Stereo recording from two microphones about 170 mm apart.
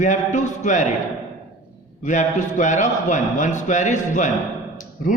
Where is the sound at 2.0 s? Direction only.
45° left (ahead or behind).